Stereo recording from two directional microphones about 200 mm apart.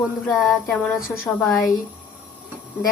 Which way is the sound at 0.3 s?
Centre (ahead or behind).